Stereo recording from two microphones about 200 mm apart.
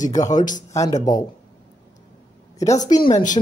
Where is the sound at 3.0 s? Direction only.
40° left (ahead or behind).